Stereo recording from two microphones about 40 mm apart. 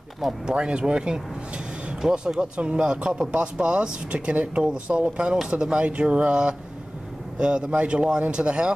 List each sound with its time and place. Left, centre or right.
0.5 s speech: right